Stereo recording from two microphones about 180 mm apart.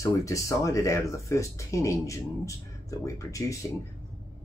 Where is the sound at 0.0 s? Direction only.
15° left (ahead or behind).